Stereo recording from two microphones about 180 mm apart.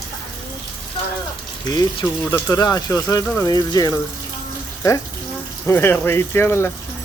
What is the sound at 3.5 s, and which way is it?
Speech, 20° left (ahead or behind).